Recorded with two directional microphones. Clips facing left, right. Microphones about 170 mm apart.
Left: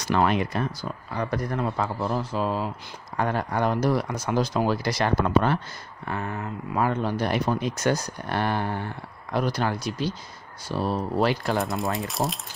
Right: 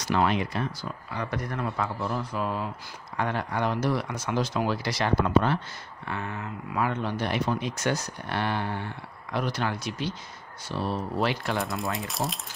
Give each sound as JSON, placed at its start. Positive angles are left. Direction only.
{"t": 0.1, "sound": "speech", "side_deg": 50}
{"t": 11.6, "sound": "speech", "side_deg": 0}